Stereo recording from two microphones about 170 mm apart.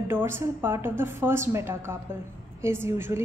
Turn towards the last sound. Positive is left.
turn(degrees=-15)  # may be behind; listen again after turning